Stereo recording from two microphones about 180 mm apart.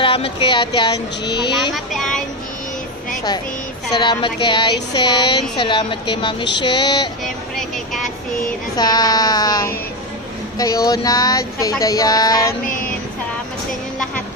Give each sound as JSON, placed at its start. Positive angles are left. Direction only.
{"t": 0.0, "sound": "speech", "side_deg": 30}
{"t": 2.0, "sound": "speech", "side_deg": 5}
{"t": 3.9, "sound": "speech", "side_deg": 25}
{"t": 7.5, "sound": "speech", "side_deg": 0}
{"t": 8.7, "sound": "speech", "side_deg": 20}